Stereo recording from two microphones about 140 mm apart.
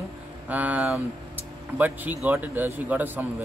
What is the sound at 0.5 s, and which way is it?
Speech, 10° right (ahead or behind).